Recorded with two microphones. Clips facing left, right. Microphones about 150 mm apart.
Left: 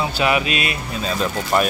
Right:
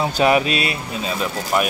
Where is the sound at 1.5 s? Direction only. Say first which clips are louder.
Left 1 dB; 5° right (ahead or behind).